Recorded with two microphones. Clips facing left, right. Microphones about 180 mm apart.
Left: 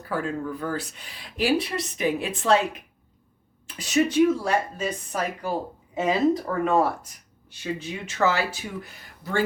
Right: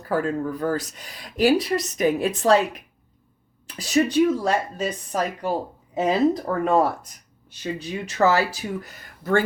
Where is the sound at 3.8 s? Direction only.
35° right (ahead or behind).